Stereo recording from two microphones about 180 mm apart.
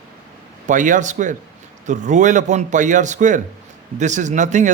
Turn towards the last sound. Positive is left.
turn(degrees=-40)  # may be behind; listen again after turning